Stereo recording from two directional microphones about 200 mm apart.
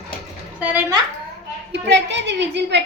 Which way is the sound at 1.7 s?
60° right (ahead or behind).